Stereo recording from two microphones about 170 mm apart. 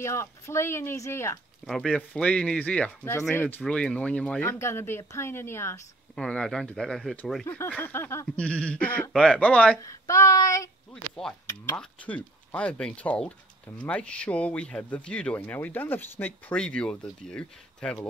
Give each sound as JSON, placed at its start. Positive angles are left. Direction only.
{"t": 0.0, "sound": "speech", "side_deg": 15}
{"t": 1.7, "sound": "speech", "side_deg": 5}
{"t": 6.1, "sound": "speech", "side_deg": 5}
{"t": 7.4, "sound": "speech", "side_deg": 15}
{"t": 9.8, "sound": "speech", "side_deg": 20}
{"t": 11.2, "sound": "speech", "side_deg": 5}